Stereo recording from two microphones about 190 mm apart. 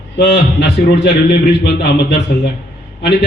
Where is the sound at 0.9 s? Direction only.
60° left (ahead or behind).